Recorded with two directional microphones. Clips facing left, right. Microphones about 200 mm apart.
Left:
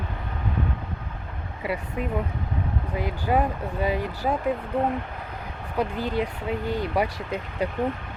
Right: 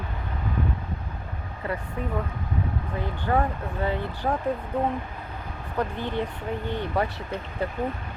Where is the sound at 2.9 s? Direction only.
15° left (ahead or behind).